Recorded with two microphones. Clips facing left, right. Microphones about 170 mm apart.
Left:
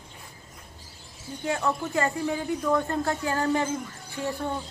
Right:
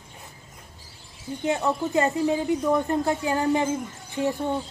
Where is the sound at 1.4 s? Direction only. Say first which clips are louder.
Right 3 dB; 20° right (ahead or behind).